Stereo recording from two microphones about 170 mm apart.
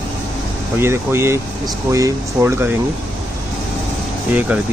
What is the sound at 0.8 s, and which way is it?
Speech, 15° right (ahead or behind).